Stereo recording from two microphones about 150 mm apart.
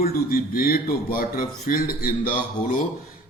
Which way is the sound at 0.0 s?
75° left (ahead or behind).